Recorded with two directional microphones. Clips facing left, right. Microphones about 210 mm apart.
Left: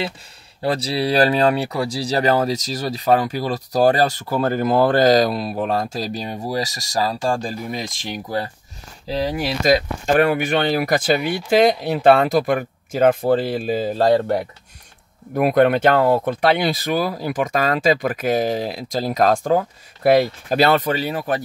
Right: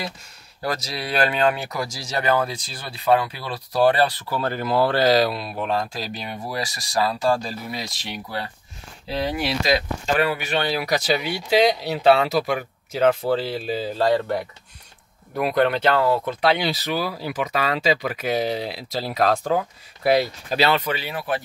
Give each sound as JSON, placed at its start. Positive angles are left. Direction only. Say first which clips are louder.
{"t": 0.6, "sound": "speech", "louder": "left 7 dB", "side_deg": 30}